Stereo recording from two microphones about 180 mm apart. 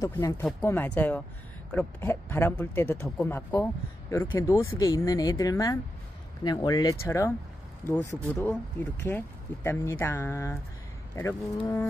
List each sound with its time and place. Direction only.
0.0 s speech: 15° left (ahead or behind)